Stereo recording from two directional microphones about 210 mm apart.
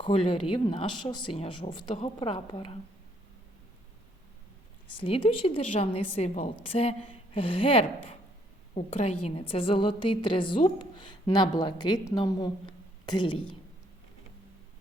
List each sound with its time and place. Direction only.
0.0 s a woman's voice: 25° left (ahead or behind)
4.9 s a woman's voice: 25° left (ahead or behind)